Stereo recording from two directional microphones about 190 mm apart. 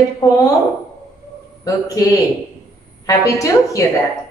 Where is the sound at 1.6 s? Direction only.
20° left (ahead or behind).